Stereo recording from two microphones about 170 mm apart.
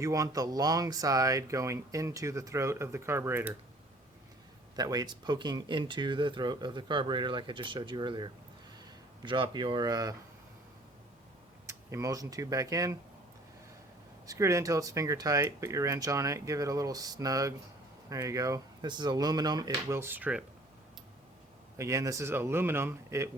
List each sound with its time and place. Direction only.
0.0 s speech: 20° right (ahead or behind)
4.8 s speech: 25° right (ahead or behind)
11.6 s speech: 15° right (ahead or behind)
14.3 s speech: 15° right (ahead or behind)
21.8 s speech: 20° right (ahead or behind)